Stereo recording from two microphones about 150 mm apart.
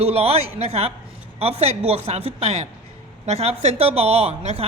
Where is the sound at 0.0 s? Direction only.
45° right (ahead or behind).